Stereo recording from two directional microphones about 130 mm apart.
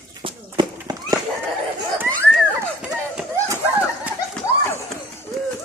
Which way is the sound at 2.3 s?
5° right (ahead or behind).